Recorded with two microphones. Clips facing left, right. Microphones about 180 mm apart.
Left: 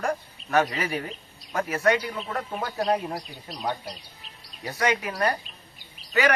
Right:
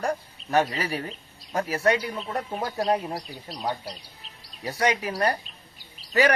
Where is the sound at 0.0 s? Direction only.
35° right (ahead or behind).